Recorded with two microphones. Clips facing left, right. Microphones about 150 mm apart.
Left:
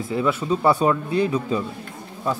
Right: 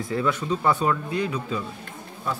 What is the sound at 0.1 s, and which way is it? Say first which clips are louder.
Speech: left 3 dB; 10° left (ahead or behind).